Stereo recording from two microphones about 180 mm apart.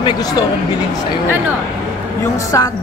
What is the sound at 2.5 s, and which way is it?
Speech, 20° left (ahead or behind).